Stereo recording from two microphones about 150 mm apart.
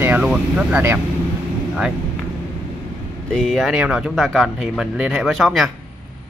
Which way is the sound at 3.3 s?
5° left (ahead or behind).